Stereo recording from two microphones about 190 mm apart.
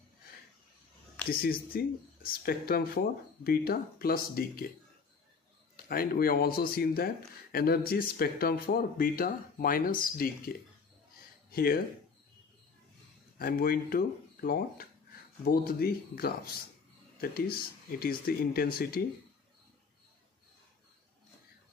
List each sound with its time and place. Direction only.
1.3 s speech: 50° left (ahead or behind)
5.8 s speech: 50° left (ahead or behind)
11.5 s speech: 50° left (ahead or behind)
13.4 s speech: 50° left (ahead or behind)